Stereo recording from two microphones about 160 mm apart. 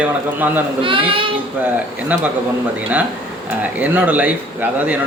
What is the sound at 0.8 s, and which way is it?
Speech, 35° right (ahead or behind).